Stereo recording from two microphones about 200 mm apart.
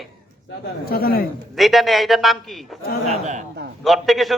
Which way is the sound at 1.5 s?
Centre (ahead or behind).